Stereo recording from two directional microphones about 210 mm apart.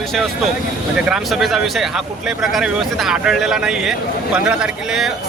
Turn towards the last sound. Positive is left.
turn(degrees=0)  # may be behind; listen again after turning